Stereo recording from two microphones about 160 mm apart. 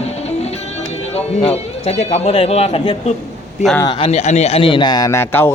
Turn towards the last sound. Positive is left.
turn(degrees=15)  # may be behind; listen again after turning